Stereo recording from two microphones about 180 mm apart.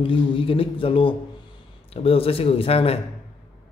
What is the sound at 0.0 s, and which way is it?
A man's voice, 30° left (ahead or behind).